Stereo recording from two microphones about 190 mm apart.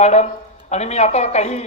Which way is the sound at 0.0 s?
35° left (ahead or behind).